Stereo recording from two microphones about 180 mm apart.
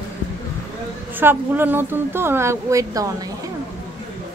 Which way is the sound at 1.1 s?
10° right (ahead or behind).